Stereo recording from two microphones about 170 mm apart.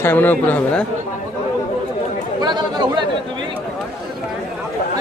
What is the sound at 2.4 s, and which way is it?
Chatter, 25° right (ahead or behind).